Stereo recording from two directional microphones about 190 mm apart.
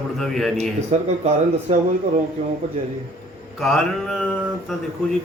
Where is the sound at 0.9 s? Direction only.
35° right (ahead or behind).